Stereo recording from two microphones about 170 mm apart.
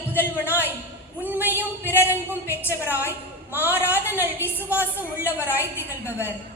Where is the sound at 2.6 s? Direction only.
10° right (ahead or behind).